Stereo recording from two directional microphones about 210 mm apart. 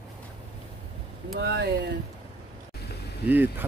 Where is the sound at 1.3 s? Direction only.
55° right (ahead or behind).